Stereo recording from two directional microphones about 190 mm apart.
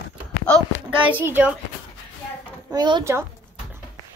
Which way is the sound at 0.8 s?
5° right (ahead or behind).